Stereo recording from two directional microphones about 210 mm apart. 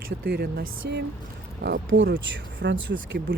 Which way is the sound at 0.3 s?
45° right (ahead or behind).